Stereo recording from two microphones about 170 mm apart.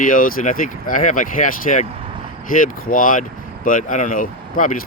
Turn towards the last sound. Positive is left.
turn(degrees=50)  # may be behind; listen again after turning